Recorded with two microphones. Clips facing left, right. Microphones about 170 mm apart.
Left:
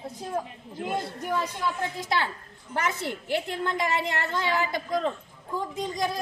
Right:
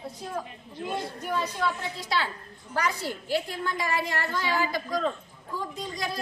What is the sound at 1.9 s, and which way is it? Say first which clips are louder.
A woman's voice: left 2 dB; 20° left (ahead or behind).